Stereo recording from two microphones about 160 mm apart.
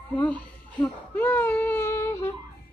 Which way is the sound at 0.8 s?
15° left (ahead or behind).